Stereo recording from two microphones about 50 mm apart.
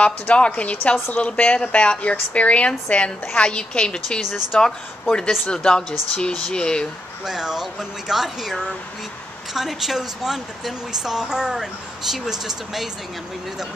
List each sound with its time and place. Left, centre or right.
0.0 s speech: left
7.2 s speech: centre